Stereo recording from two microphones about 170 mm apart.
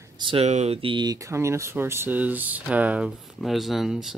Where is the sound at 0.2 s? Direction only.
35° right (ahead or behind).